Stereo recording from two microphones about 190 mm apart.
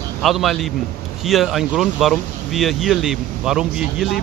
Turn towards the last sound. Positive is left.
turn(degrees=0)  # may be behind; listen again after turning